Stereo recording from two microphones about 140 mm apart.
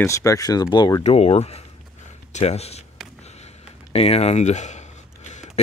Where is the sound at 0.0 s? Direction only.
20° left (ahead or behind).